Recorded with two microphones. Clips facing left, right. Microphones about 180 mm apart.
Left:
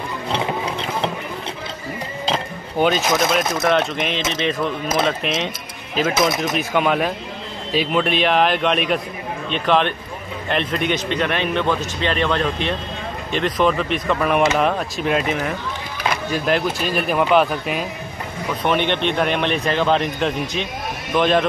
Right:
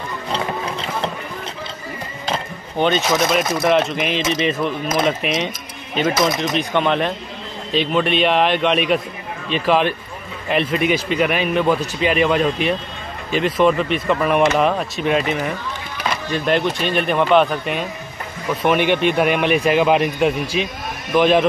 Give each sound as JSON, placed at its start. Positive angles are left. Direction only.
{"t": 0.3, "sound": "music", "side_deg": 15}
{"t": 2.3, "sound": "chink", "side_deg": 5}
{"t": 3.6, "sound": "speech", "side_deg": 0}